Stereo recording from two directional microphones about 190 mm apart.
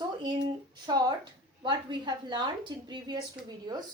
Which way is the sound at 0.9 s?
20° right (ahead or behind).